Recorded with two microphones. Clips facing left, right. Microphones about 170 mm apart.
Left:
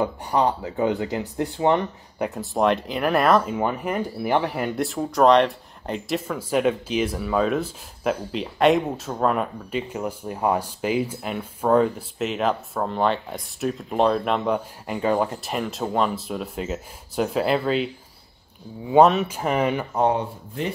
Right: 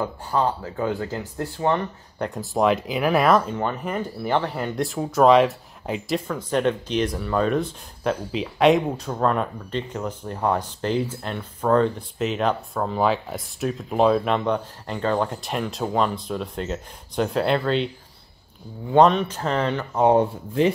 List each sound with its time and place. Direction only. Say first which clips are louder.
0.0 s speech: left 2 dB; 15° left (ahead or behind)
2.1 s speech: even; 5° left (ahead or behind)
3.5 s speech: left 2 dB; 10° left (ahead or behind)
18.9 s speech: left 1 dB; 5° left (ahead or behind)